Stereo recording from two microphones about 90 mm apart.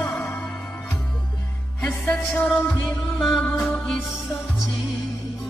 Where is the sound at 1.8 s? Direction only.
15° left (ahead or behind).